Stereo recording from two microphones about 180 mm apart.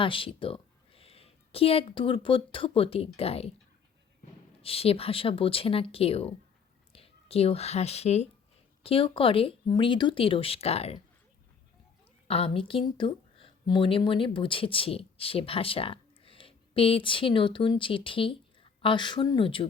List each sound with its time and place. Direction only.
0.0 s a woman's voice: 30° left (ahead or behind)
4.6 s speech: 30° left (ahead or behind)
12.3 s a woman's voice: 30° left (ahead or behind)